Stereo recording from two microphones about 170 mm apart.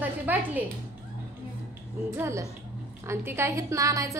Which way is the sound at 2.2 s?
15° right (ahead or behind).